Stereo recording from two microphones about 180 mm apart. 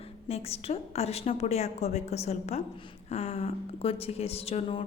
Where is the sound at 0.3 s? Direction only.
35° left (ahead or behind).